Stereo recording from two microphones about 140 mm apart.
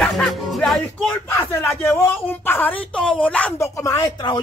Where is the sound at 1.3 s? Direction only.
15° left (ahead or behind).